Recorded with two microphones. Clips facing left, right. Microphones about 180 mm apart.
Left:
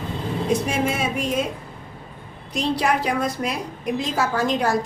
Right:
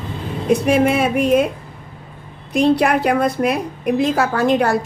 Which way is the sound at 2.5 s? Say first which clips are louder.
Right 7 dB; 60° right (ahead or behind).